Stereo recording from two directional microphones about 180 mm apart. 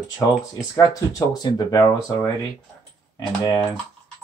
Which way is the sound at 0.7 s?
20° left (ahead or behind).